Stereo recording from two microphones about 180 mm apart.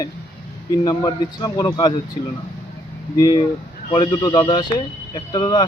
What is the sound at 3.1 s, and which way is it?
Speech, 20° left (ahead or behind).